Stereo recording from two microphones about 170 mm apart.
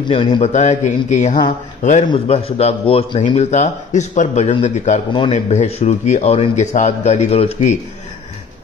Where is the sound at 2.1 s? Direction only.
35° left (ahead or behind).